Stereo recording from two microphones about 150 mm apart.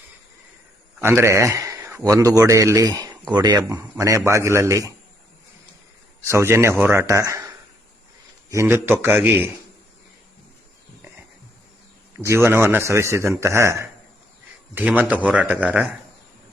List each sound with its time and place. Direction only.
1.0 s a man's voice: 15° right (ahead or behind)
6.2 s a man's voice: 15° right (ahead or behind)
12.1 s a man's voice: 15° right (ahead or behind)